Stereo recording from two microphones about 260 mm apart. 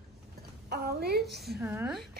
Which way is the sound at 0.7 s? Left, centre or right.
Right.